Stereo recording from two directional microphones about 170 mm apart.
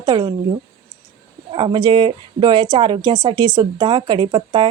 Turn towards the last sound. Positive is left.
turn(degrees=-30)  # may be behind; listen again after turning